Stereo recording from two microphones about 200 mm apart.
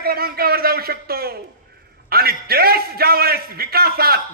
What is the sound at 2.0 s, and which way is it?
A man's voice, 50° right (ahead or behind).